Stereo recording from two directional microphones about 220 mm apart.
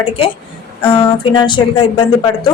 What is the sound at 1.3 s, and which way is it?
Speech, 20° left (ahead or behind).